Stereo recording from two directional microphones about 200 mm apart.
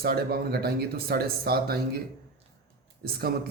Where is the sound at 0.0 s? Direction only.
50° right (ahead or behind).